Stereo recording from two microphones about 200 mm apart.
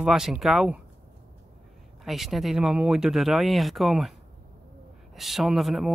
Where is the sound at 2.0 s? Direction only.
Centre (ahead or behind).